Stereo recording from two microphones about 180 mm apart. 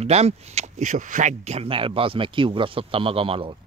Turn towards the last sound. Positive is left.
turn(degrees=-30)  # may be behind; listen again after turning